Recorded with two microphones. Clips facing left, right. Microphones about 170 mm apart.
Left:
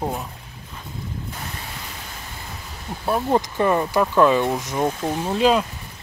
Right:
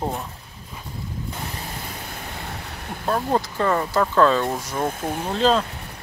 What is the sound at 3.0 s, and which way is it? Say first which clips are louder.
Speech: left 2 dB; 10° left (ahead or behind).